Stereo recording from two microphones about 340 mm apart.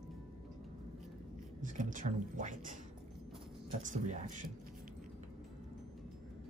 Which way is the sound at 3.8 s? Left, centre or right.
Right.